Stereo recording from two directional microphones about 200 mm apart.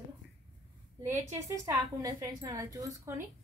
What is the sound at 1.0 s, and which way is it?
A woman's voice, 15° right (ahead or behind).